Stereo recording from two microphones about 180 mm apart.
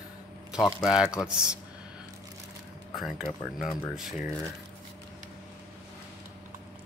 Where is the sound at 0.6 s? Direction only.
20° left (ahead or behind).